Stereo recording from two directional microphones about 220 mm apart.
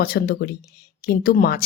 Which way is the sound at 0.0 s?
45° left (ahead or behind).